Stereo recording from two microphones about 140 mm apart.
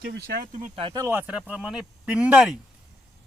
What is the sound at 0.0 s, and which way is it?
Speech, 90° right.